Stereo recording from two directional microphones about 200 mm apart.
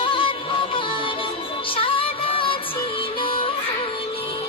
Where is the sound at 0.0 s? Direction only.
25° left (ahead or behind).